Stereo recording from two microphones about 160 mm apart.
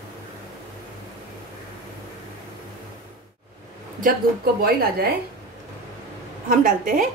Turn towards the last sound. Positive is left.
turn(degrees=-55)  # may be behind; listen again after turning